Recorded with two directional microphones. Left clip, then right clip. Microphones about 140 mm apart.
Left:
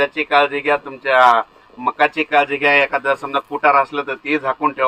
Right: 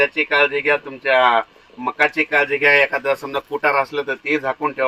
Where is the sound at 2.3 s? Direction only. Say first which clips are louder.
Even; centre (ahead or behind).